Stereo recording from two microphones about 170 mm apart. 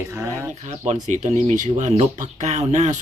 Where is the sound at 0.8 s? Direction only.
40° right (ahead or behind).